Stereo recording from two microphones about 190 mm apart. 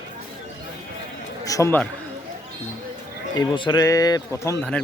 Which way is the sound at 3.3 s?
25° left (ahead or behind).